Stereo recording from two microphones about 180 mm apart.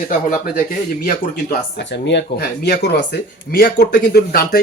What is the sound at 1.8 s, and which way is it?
Speech, 70° left (ahead or behind).